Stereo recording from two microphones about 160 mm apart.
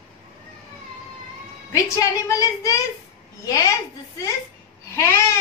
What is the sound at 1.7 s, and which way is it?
A woman's voice, 20° left (ahead or behind).